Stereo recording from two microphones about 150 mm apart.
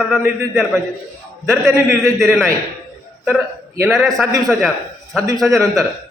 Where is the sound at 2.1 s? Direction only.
5° left (ahead or behind).